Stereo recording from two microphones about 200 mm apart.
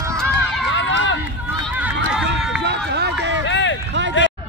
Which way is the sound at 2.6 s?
55° right (ahead or behind).